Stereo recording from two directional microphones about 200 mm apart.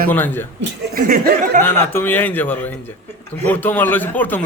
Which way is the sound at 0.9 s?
45° right (ahead or behind).